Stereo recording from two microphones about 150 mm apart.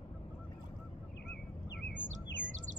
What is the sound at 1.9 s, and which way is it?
Bird, 55° right (ahead or behind).